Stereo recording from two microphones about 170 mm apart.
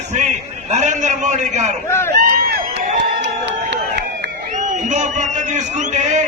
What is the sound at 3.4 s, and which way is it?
Crowd, 90° right.